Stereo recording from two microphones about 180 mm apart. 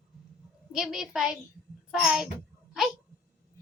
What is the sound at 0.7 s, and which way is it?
A child's voice, 5° right (ahead or behind).